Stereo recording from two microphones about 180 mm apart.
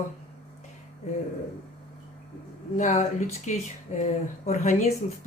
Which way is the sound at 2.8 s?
40° left (ahead or behind).